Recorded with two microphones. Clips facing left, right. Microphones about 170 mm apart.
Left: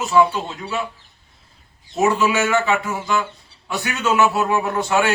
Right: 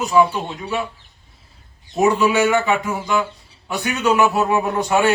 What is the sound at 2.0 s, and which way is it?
A man's voice, 15° right (ahead or behind).